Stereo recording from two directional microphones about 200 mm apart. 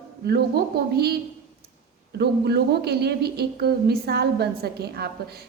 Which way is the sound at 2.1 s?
55° right (ahead or behind).